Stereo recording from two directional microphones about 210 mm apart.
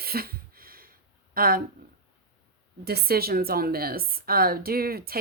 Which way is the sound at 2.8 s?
50° right (ahead or behind).